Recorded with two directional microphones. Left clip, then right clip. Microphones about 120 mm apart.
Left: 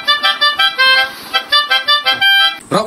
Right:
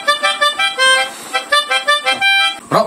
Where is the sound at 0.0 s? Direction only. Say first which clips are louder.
Left 2 dB; centre (ahead or behind).